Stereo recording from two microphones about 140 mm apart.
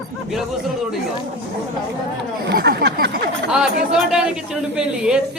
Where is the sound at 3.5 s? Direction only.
5° right (ahead or behind).